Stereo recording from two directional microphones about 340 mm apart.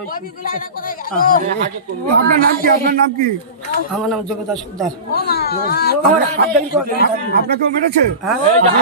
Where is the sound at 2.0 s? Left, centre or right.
Right.